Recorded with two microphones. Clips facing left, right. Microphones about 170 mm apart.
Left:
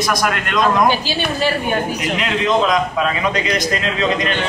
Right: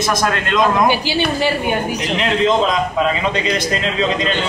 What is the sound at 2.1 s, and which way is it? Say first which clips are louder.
A man's voice: right 2 dB; 25° right (ahead or behind).